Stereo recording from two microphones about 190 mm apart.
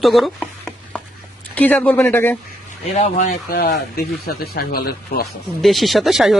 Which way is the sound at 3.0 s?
45° left (ahead or behind).